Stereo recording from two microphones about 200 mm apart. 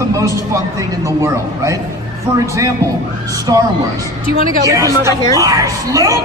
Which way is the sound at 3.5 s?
20° right (ahead or behind).